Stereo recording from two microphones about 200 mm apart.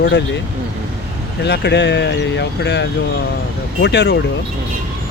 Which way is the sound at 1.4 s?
60° left (ahead or behind).